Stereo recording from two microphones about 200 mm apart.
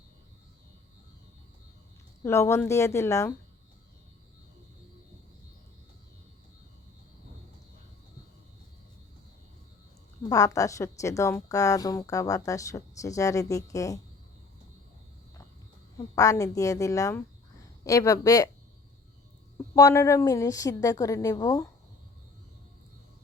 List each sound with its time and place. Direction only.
2.2 s a woman's voice: 15° left (ahead or behind)
10.2 s a woman's voice: 15° left (ahead or behind)
16.0 s a woman's voice: 15° left (ahead or behind)
19.5 s a woman's voice: 15° left (ahead or behind)